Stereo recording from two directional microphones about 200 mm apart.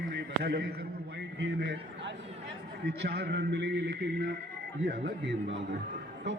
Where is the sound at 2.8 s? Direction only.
55° right (ahead or behind).